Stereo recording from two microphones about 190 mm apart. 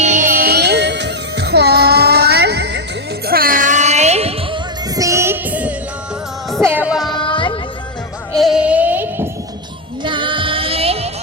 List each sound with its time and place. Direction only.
0.0 s music: 40° right (ahead or behind); by 2.8 s 60° right (ahead or behind)
3.2 s music: 50° right (ahead or behind); by 4.6 s 30° right (ahead or behind)
4.9 s music: 15° right (ahead or behind)
7.1 s music: 25° left (ahead or behind)
8.4 s bleat: 5° right (ahead or behind)
10.0 s music: 25° right (ahead or behind)